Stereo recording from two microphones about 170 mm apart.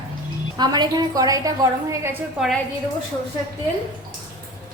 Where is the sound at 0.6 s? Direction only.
25° right (ahead or behind).